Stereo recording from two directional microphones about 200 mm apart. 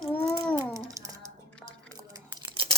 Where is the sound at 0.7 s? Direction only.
15° right (ahead or behind).